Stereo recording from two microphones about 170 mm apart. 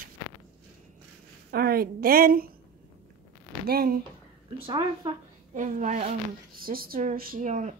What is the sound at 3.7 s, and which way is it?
Speech, 60° right (ahead or behind).